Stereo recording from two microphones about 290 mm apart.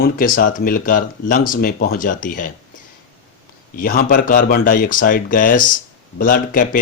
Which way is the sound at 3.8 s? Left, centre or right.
Left.